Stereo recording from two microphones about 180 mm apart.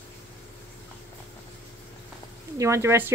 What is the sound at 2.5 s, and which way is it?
Speech, 15° right (ahead or behind).